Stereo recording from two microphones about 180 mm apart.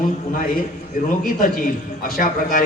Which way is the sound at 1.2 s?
50° left (ahead or behind).